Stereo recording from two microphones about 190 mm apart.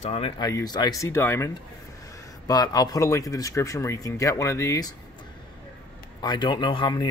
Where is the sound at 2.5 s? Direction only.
20° left (ahead or behind).